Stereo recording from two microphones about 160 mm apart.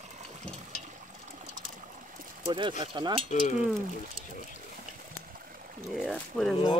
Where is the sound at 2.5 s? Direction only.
30° right (ahead or behind).